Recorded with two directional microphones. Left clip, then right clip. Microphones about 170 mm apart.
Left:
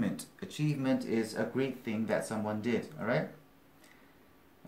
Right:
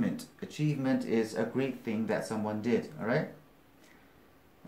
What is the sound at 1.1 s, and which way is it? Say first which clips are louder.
Speech: right 3 dB; 10° left (ahead or behind).